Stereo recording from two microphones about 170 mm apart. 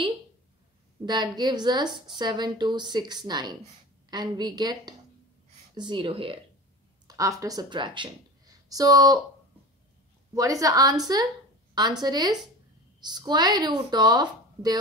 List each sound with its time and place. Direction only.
1.0 s a woman's voice: 25° right (ahead or behind)
7.1 s a woman's voice: 20° right (ahead or behind)
10.3 s a woman's voice: 20° right (ahead or behind)